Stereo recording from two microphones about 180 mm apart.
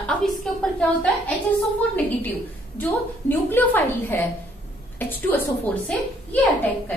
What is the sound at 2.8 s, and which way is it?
A woman's voice, 10° left (ahead or behind).